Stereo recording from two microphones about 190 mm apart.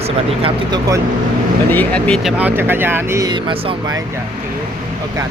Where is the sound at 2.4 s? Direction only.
10° right (ahead or behind); by 3.9 s 25° right (ahead or behind).